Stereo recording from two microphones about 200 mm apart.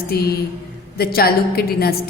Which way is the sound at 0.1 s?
50° left (ahead or behind).